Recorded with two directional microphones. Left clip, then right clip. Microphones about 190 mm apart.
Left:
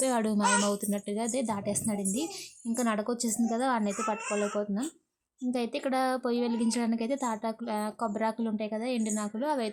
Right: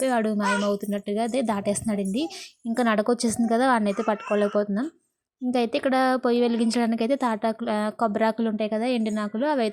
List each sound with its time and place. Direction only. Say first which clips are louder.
0.0 s a woman's voice: right 4 dB; 10° right (ahead or behind)